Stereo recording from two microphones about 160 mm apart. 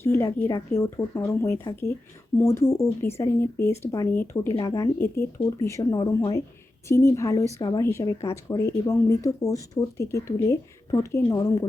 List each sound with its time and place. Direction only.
0.0 s speech: 15° left (ahead or behind)